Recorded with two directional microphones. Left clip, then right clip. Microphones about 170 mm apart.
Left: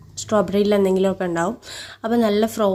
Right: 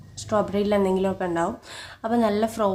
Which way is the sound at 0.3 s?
30° left (ahead or behind).